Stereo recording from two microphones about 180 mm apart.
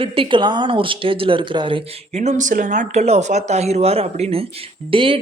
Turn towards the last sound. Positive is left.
turn(degrees=-30)  # may be behind; listen again after turning